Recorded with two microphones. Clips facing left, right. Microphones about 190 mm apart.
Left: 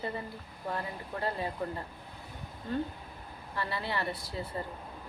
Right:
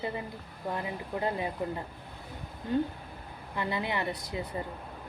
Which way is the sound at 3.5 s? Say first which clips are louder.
Right 3 dB; 15° right (ahead or behind).